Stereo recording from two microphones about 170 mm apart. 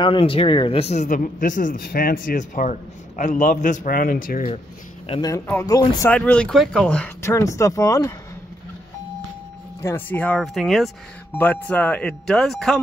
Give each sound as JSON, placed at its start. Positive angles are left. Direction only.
{"t": 0.0, "sound": "speech", "side_deg": 30}
{"t": 5.2, "sound": "speech", "side_deg": 15}
{"t": 6.0, "sound": "speech", "side_deg": 10}
{"t": 9.8, "sound": "speech", "side_deg": 15}